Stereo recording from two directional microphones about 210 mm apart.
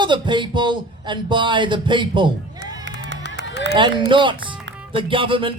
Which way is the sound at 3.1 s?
60° right (ahead or behind).